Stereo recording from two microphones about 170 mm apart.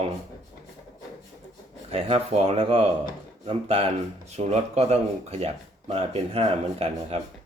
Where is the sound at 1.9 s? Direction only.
35° right (ahead or behind).